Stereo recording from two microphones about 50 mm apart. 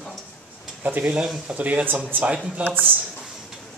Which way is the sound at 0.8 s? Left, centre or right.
Right.